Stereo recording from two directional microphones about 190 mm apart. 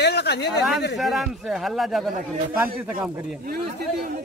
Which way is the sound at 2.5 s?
10° right (ahead or behind).